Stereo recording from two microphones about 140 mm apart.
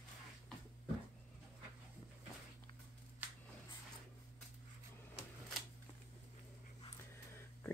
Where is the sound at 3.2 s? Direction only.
10° right (ahead or behind).